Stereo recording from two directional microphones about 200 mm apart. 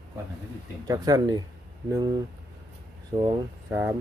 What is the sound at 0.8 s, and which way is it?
Speech, 20° right (ahead or behind).